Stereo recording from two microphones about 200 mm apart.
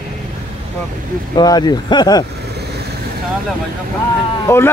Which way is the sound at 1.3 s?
20° left (ahead or behind).